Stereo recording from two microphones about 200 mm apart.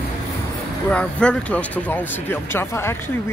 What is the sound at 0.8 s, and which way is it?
Speech, 5° left (ahead or behind).